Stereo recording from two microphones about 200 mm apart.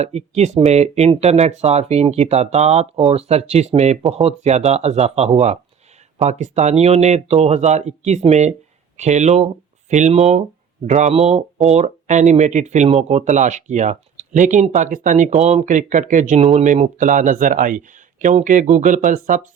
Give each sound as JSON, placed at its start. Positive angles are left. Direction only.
{"t": 0.0, "sound": "speech", "side_deg": -30}